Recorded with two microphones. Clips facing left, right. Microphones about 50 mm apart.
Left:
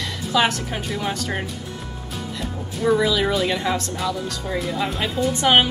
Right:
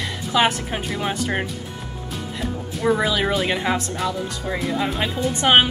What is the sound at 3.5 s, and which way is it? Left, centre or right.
Speech, right.